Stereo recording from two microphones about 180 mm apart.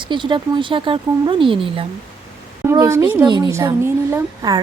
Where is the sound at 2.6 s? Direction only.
15° right (ahead or behind).